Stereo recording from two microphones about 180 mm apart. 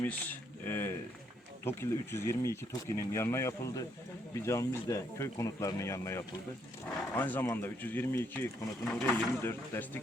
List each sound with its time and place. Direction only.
0.0 s speech: 10° left (ahead or behind)